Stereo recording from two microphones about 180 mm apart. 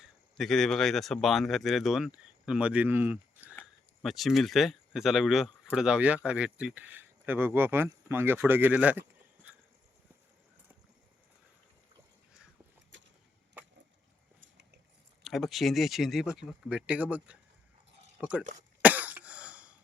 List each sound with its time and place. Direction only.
0.0 s speech: centre (ahead or behind)
4.0 s speech: centre (ahead or behind)
12.9 s a sound: 90° right
15.2 s speech: centre (ahead or behind)
18.2 s speech: 5° right (ahead or behind)
18.8 s cough: 10° right (ahead or behind)